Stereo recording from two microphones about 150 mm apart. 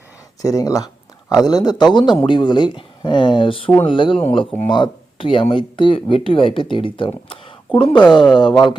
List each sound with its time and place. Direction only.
0.4 s speech: 25° left (ahead or behind)